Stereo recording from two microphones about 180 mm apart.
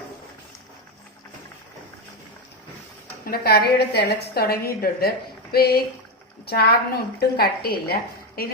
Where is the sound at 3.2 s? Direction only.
60° left (ahead or behind).